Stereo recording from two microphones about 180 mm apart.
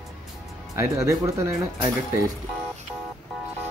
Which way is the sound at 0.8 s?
15° right (ahead or behind).